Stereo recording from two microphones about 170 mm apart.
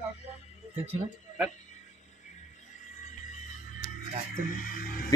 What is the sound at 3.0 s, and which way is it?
Music, 45° left (ahead or behind).